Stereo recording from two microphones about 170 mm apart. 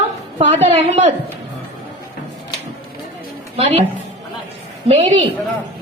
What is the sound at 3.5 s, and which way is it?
Speech, 40° right (ahead or behind).